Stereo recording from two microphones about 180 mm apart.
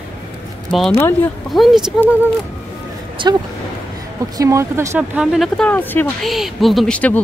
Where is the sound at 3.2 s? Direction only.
25° right (ahead or behind); by 6.1 s 10° left (ahead or behind).